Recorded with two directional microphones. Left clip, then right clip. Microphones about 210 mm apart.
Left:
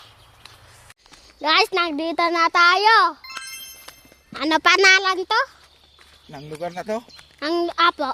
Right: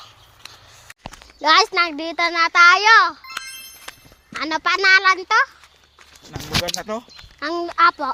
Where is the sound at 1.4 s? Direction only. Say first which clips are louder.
Right 3 dB; 5° left (ahead or behind).